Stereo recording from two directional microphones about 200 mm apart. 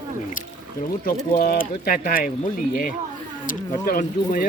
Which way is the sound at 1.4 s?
45° left (ahead or behind).